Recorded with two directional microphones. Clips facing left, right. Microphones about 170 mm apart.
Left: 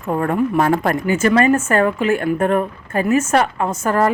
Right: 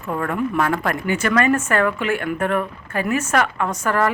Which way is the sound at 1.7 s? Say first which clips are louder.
Left 4 dB; 40° left (ahead or behind).